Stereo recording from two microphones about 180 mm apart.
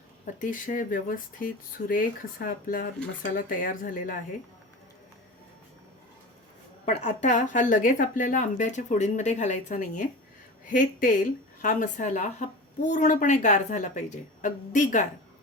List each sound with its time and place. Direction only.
0.3 s a woman's voice: 45° left (ahead or behind)
6.8 s a woman's voice: 40° left (ahead or behind)